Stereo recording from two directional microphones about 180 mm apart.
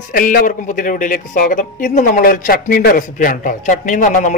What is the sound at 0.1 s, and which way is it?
A man's voice, 50° left (ahead or behind).